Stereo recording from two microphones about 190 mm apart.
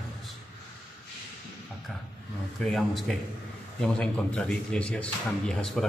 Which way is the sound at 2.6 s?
Centre (ahead or behind).